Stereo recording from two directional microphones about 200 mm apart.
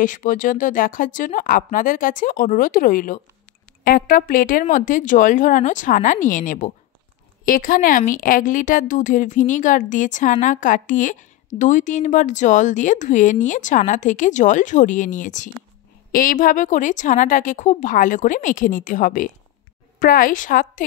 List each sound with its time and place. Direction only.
0.0 s a woman's voice: 40° left (ahead or behind)